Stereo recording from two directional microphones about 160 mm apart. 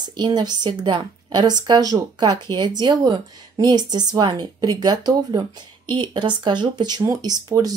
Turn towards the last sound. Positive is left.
turn(degrees=-25)  # may be behind; listen again after turning